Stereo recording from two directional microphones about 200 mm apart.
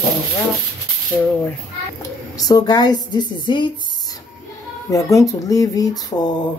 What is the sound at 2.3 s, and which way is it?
A woman's voice, 20° left (ahead or behind).